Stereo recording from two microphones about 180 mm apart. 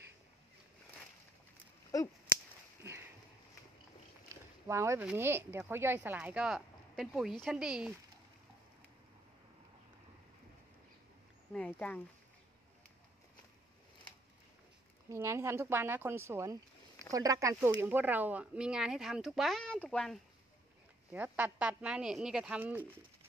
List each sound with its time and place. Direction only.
2.8 s a sound: 15° right (ahead or behind)
4.6 s speech: 15° right (ahead or behind)
11.5 s speech: 5° left (ahead or behind)
15.0 s speech: 15° right (ahead or behind); by 20.2 s 5° left (ahead or behind)
21.1 s speech: 10° right (ahead or behind)